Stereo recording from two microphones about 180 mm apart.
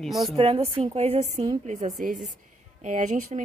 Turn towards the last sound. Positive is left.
turn(degrees=-45)  # may be behind; listen again after turning